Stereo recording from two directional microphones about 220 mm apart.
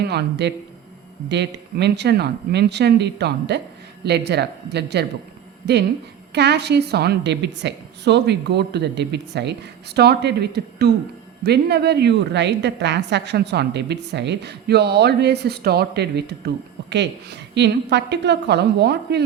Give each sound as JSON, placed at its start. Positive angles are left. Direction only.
{"t": 0.0, "sound": "a woman's voice", "side_deg": -50}
{"t": 6.3, "sound": "a woman's voice", "side_deg": -50}